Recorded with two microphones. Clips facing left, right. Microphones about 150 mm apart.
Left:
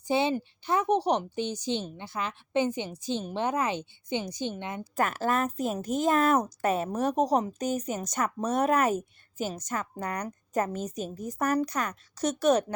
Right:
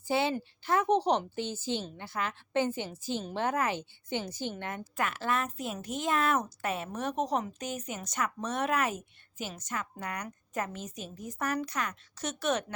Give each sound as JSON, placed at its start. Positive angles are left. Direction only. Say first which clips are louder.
{"t": 0.0, "sound": "a woman's voice", "louder": "left 3 dB", "side_deg": 20}
{"t": 4.9, "sound": "speech", "louder": "left 5 dB", "side_deg": 40}